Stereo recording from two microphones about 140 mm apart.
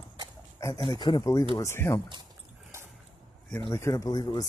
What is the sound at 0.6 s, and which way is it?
Speech, 20° left (ahead or behind).